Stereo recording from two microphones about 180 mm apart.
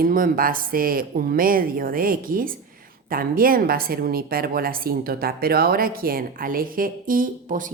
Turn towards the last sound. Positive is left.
turn(degrees=-50)  # may be behind; listen again after turning